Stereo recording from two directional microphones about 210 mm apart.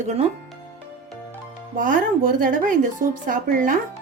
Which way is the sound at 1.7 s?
40° right (ahead or behind).